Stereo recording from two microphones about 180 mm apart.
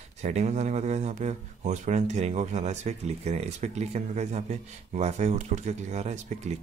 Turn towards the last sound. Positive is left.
turn(degrees=-40)  # may be behind; listen again after turning